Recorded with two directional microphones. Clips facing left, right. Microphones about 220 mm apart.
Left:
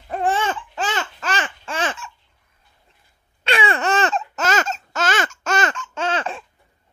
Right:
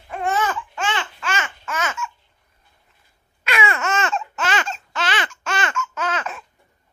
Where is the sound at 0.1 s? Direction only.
30° left (ahead or behind).